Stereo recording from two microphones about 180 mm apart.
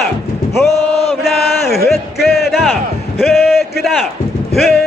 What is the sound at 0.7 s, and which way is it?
Chant, 35° left (ahead or behind).